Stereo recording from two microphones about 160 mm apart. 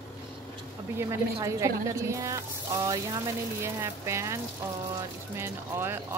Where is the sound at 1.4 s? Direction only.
20° right (ahead or behind).